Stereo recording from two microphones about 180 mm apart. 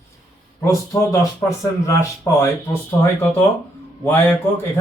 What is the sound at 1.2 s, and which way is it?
Speech, 15° left (ahead or behind).